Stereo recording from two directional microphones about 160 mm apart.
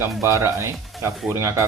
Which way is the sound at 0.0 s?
15° right (ahead or behind).